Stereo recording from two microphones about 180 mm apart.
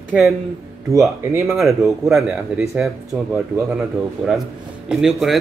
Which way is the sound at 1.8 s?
Centre (ahead or behind).